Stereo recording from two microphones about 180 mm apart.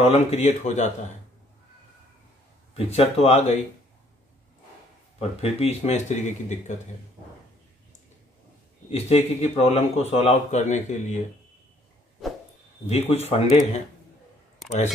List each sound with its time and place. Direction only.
0.0 s speech: 35° left (ahead or behind)
2.7 s speech: 35° left (ahead or behind)
5.4 s speech: 35° left (ahead or behind)
8.9 s speech: 35° left (ahead or behind)
12.8 s speech: 35° left (ahead or behind)